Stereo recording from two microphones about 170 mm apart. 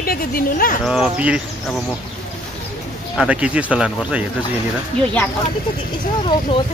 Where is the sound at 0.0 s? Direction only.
60° left (ahead or behind).